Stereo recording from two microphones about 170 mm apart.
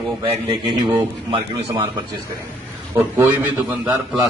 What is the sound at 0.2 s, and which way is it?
A man's voice, 25° right (ahead or behind).